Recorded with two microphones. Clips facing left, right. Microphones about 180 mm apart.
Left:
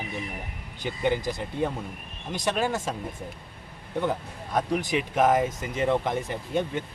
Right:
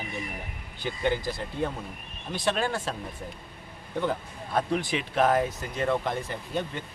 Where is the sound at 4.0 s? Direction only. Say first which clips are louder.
Left 1 dB; 10° left (ahead or behind).